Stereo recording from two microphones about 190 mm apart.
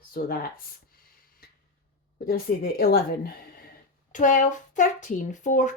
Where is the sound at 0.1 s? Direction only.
50° left (ahead or behind).